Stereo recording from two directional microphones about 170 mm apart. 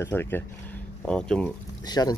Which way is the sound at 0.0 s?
15° left (ahead or behind).